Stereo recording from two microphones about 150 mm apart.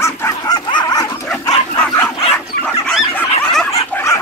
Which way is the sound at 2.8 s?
10° left (ahead or behind).